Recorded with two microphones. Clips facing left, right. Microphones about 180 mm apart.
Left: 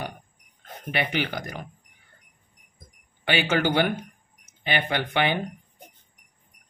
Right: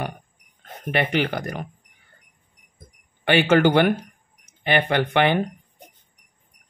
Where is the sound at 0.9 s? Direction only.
55° right (ahead or behind).